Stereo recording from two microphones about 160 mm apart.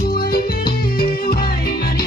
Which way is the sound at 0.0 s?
65° left (ahead or behind).